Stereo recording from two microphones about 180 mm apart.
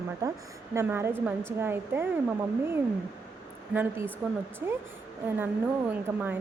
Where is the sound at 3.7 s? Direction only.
10° right (ahead or behind).